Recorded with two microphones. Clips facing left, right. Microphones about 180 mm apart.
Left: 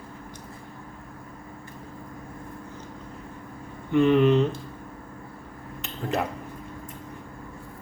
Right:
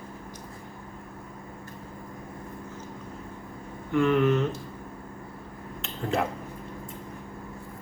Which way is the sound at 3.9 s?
20° left (ahead or behind).